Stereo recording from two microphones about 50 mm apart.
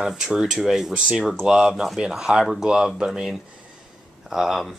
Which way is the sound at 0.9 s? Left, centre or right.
Centre.